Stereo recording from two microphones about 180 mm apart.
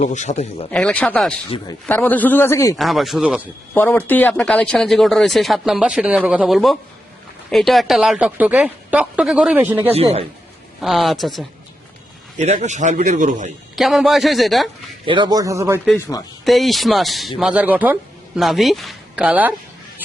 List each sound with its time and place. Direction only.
0.0 s speech: 40° left (ahead or behind)
0.7 s a man's voice: 5° left (ahead or behind)
2.7 s speech: centre (ahead or behind)
3.8 s speech: 10° left (ahead or behind); by 9.9 s 10° right (ahead or behind)
9.9 s a man's voice: 35° right (ahead or behind)
10.8 s speech: centre (ahead or behind)
12.4 s a man's voice: 40° right (ahead or behind)
13.7 s speech: centre (ahead or behind)
15.0 s speech: 25° right (ahead or behind)
16.0 s a man's voice: 15° left (ahead or behind)
16.4 s speech: centre (ahead or behind)